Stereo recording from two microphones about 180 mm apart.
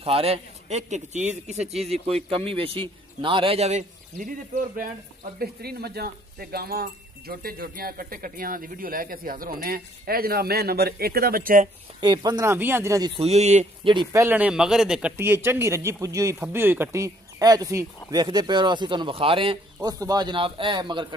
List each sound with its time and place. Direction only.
0.0 s a man's voice: 35° right (ahead or behind)
5.4 s speech: 60° right (ahead or behind)
12.0 s a man's voice: 20° right (ahead or behind)
13.2 s a man's voice: 40° right (ahead or behind)
13.8 s a man's voice: 25° right (ahead or behind)
14.2 s a man's voice: 10° right (ahead or behind); by 21.1 s 25° right (ahead or behind)